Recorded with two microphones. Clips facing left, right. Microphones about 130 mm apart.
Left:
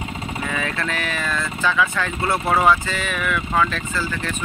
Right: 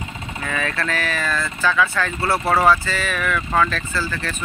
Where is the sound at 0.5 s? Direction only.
20° left (ahead or behind).